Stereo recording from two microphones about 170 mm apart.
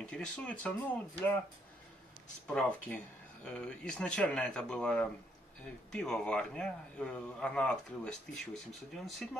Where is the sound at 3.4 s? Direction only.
5° left (ahead or behind).